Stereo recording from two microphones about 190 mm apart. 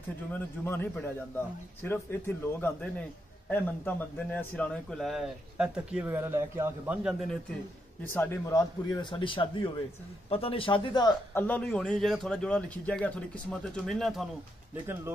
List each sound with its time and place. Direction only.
0.3 s a man's voice: 10° left (ahead or behind)
8.0 s a man's voice: 10° left (ahead or behind)
11.3 s a man's voice: 10° left (ahead or behind)